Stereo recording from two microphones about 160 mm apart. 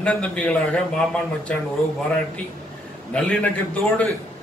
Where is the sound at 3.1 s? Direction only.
5° left (ahead or behind).